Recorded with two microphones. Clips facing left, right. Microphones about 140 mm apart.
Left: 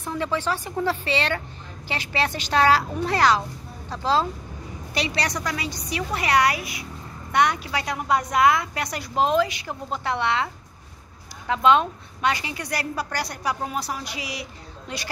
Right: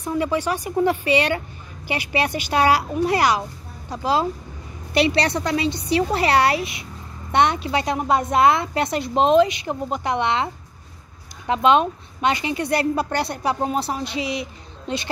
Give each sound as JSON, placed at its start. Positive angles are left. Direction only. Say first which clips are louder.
{"t": 0.0, "sound": "speech", "louder": "right 4 dB", "side_deg": -10}
{"t": 5.1, "sound": "a woman's voice", "louder": "right 6 dB", "side_deg": -30}